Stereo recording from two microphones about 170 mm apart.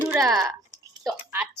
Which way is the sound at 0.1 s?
Centre (ahead or behind).